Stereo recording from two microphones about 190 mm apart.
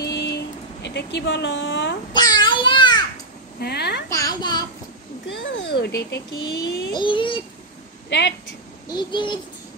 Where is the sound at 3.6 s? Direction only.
60° left (ahead or behind).